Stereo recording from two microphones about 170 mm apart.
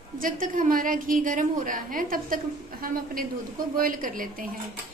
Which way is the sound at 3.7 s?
55° right (ahead or behind).